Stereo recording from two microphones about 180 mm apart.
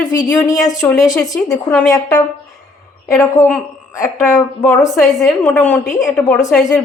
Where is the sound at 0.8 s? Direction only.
10° left (ahead or behind).